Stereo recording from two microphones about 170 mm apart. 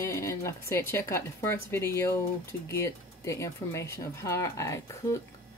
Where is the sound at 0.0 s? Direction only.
15° left (ahead or behind).